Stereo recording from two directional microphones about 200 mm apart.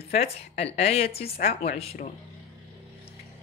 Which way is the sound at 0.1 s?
30° left (ahead or behind).